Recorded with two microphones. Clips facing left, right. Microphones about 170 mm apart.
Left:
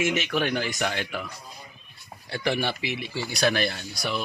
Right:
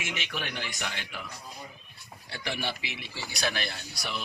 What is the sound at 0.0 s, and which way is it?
Speech, 45° left (ahead or behind).